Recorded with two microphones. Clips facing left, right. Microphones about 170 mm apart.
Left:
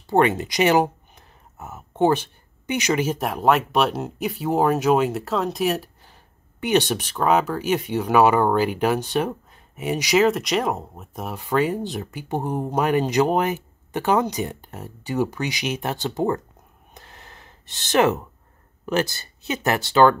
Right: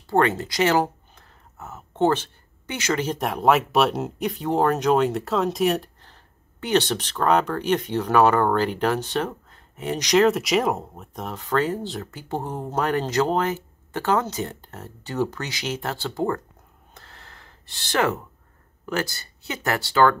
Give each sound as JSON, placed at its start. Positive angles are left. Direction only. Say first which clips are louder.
{"t": 0.0, "sound": "speech", "louder": "left 2 dB", "side_deg": 20}
{"t": 16.9, "sound": "gasp", "louder": "left 3 dB", "side_deg": 15}
{"t": 18.9, "sound": "speech", "louder": "left 4 dB", "side_deg": 20}